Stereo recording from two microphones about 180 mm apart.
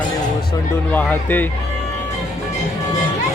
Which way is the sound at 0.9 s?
10° left (ahead or behind).